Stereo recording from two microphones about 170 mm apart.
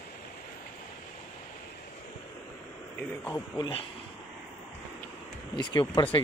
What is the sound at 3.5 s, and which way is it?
Speech, 25° left (ahead or behind).